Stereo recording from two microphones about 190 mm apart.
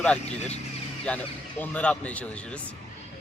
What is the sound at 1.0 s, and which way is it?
A man's voice, 10° left (ahead or behind).